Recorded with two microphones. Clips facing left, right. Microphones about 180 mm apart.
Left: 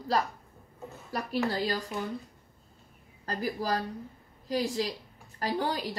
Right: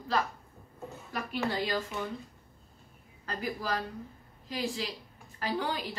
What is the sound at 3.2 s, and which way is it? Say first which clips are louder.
A woman's voice: left 3 dB; 40° left (ahead or behind).